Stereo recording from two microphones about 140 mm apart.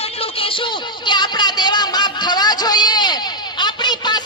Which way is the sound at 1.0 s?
30° left (ahead or behind).